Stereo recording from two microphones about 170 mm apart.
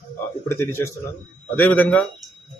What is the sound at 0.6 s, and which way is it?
A man's voice, 15° left (ahead or behind).